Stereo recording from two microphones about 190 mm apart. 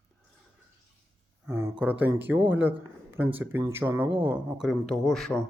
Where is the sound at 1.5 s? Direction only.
10° right (ahead or behind).